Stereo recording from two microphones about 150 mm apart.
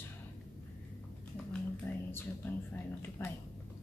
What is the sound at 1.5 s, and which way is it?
Speech, 15° left (ahead or behind).